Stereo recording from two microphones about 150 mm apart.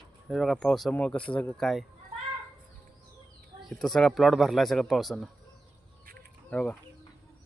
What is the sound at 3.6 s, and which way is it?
Speech, centre (ahead or behind).